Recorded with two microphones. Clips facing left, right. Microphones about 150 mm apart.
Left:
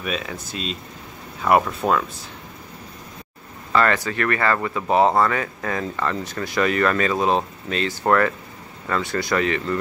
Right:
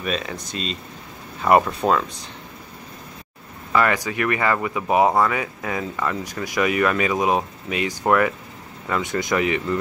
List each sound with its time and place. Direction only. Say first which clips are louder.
0.0 s speech: right 1 dB; centre (ahead or behind)
3.7 s speech: even; 15° right (ahead or behind)